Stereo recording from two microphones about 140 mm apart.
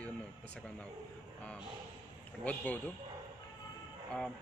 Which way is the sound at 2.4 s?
10° left (ahead or behind).